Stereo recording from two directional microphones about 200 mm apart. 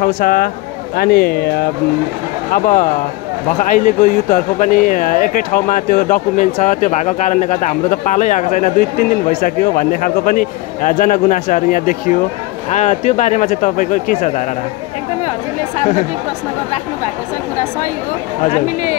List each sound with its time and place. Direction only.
0.0 s speech: 45° left (ahead or behind)
15.8 s speech: 35° left (ahead or behind)
18.4 s speech: 40° left (ahead or behind)